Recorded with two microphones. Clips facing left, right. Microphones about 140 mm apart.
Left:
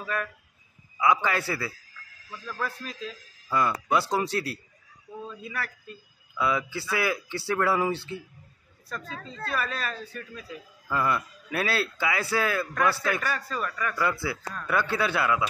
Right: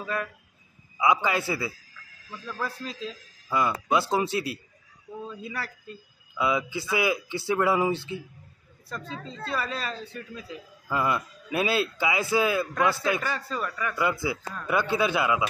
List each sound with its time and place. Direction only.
0.0 s speech: 20° right (ahead or behind)
2.8 s speech: 25° right (ahead or behind)